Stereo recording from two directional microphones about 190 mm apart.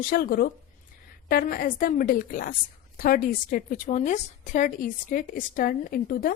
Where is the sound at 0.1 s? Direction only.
50° left (ahead or behind).